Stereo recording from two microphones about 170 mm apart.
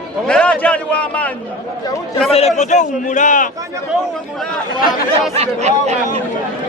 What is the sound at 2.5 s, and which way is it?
Speech, 45° left (ahead or behind).